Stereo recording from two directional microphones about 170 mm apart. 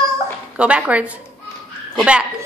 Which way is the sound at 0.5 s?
5° right (ahead or behind).